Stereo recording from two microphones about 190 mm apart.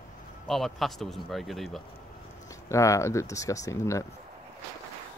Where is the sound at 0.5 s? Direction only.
Centre (ahead or behind).